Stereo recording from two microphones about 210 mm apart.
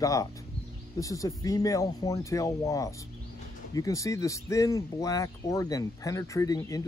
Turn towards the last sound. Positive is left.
turn(degrees=15)  # may be behind; listen again after turning